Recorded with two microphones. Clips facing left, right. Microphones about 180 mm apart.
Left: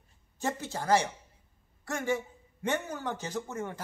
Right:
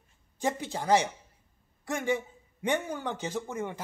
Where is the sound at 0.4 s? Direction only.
15° right (ahead or behind).